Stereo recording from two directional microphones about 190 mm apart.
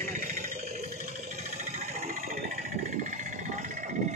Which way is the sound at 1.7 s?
40° right (ahead or behind).